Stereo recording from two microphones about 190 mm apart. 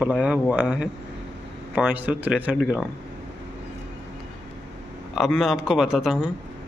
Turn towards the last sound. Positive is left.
turn(degrees=0)  # may be behind; listen again after turning